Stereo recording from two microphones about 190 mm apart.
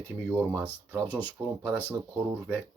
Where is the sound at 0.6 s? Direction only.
10° left (ahead or behind).